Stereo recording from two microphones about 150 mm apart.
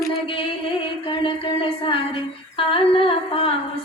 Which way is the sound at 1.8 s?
35° left (ahead or behind).